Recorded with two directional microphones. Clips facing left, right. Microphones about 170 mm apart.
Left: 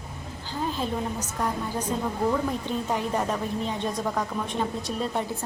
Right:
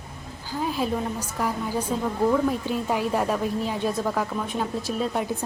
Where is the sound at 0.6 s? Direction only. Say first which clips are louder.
Right 3 dB; 10° right (ahead or behind).